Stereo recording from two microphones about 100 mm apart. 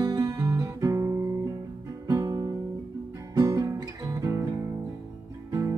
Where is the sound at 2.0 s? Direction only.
35° right (ahead or behind).